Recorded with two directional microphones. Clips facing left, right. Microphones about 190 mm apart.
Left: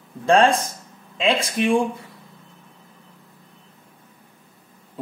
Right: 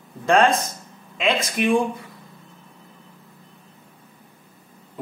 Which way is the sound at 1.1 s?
30° left (ahead or behind).